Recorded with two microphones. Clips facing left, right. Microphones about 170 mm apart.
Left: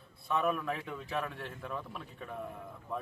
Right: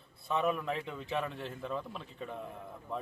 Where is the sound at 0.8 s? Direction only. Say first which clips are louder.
Right 1 dB; 25° right (ahead or behind).